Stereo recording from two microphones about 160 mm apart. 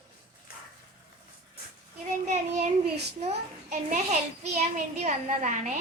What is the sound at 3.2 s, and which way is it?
A child's voice, 45° right (ahead or behind).